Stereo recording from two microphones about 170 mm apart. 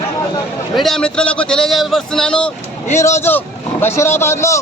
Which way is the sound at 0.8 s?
Centre (ahead or behind).